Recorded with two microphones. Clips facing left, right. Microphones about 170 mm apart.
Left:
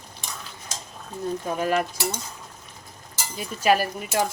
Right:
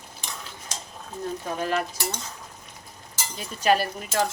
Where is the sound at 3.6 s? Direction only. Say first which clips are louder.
Left 1 dB; 10° left (ahead or behind).